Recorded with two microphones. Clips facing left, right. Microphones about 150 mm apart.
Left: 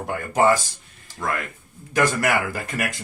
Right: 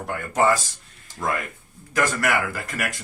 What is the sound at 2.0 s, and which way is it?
Speech, 25° left (ahead or behind).